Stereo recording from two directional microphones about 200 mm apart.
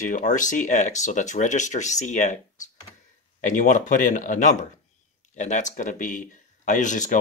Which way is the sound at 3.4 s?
40° left (ahead or behind).